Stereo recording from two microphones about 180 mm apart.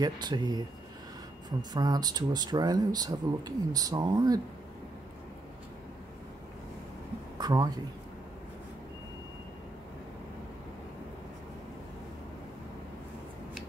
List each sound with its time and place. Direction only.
0.0 s speech: 25° right (ahead or behind)
7.3 s speech: 20° right (ahead or behind)